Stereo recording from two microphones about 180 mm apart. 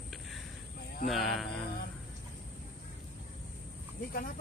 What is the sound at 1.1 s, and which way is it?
Speech, centre (ahead or behind).